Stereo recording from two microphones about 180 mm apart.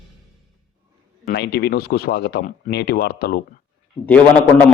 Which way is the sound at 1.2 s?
60° left (ahead or behind).